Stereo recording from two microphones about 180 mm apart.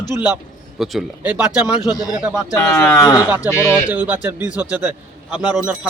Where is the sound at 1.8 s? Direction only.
20° left (ahead or behind).